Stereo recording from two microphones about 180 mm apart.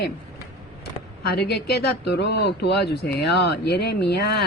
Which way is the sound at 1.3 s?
65° left (ahead or behind).